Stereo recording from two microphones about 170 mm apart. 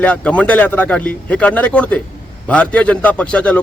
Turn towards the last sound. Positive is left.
turn(degrees=5)  # may be behind; listen again after turning